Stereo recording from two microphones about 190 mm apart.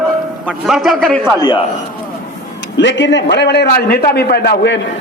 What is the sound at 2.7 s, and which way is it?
A man's voice, 70° left (ahead or behind).